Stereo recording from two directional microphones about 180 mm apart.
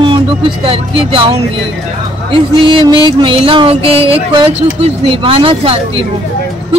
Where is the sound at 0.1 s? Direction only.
30° right (ahead or behind).